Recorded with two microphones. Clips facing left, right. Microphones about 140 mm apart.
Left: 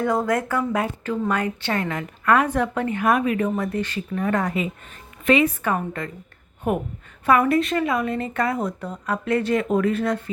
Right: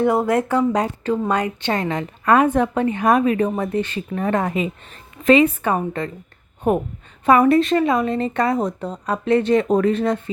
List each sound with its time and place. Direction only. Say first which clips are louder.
0.0 s speech: right 4 dB; 20° right (ahead or behind)
1.2 s a woman's voice: right 3 dB; 20° right (ahead or behind)
4.3 s a woman's voice: right 3 dB; 25° right (ahead or behind)
5.2 s speech: right 5 dB; 35° right (ahead or behind)
5.6 s a woman's voice: right 4 dB; 25° right (ahead or behind)
9.6 s speech: right 4 dB; 40° right (ahead or behind)
9.9 s a woman's voice: right 3 dB; 20° right (ahead or behind)